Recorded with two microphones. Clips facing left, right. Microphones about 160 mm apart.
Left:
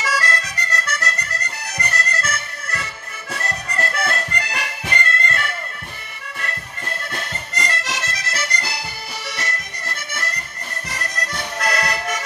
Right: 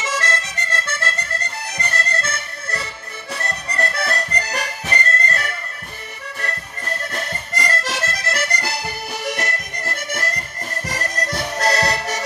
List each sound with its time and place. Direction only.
0.0 s accordion: 25° right (ahead or behind); by 5.5 s 40° right (ahead or behind)
7.6 s accordion: 50° right (ahead or behind)